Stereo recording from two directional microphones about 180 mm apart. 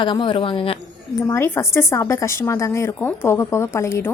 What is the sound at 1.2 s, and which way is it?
Speech, 15° left (ahead or behind).